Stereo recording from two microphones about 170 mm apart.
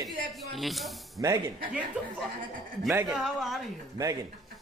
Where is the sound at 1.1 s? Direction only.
20° right (ahead or behind).